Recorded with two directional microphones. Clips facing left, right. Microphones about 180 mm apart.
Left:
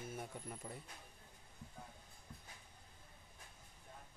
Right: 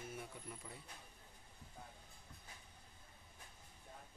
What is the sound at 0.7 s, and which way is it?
Speech, 40° left (ahead or behind).